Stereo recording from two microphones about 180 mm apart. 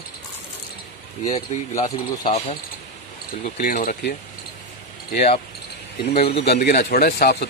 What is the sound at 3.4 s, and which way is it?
Speech, 50° left (ahead or behind).